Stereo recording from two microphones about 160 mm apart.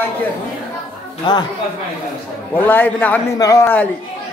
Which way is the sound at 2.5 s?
10° left (ahead or behind).